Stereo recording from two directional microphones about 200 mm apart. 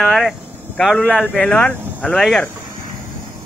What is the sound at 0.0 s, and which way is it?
Speech, centre (ahead or behind).